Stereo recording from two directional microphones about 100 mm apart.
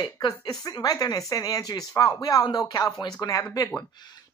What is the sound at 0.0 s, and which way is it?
Speech, 45° left (ahead or behind).